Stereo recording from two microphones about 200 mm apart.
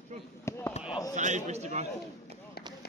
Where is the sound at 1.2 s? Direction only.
35° right (ahead or behind).